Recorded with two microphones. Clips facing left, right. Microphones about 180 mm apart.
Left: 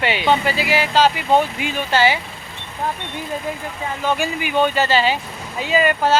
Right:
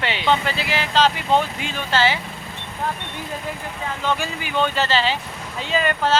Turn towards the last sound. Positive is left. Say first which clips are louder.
# left 4 dB
turn(degrees=10)  # may be behind; listen again after turning